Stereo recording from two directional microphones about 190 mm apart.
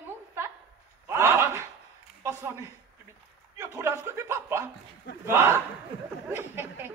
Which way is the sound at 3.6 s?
15° right (ahead or behind).